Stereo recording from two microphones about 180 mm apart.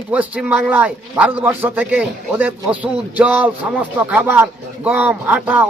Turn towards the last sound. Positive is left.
turn(degrees=-10)  # may be behind; listen again after turning